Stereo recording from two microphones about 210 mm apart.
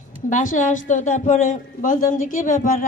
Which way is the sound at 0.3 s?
35° left (ahead or behind).